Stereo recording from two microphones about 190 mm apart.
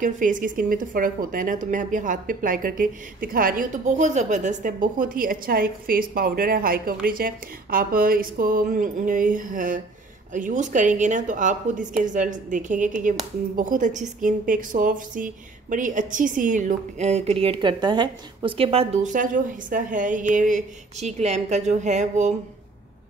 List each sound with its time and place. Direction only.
0.0 s a woman's voice: 45° right (ahead or behind)